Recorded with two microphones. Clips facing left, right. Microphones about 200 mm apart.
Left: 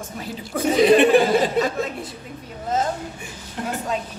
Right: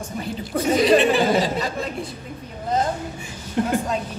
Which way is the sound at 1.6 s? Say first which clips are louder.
Left 2 dB; centre (ahead or behind).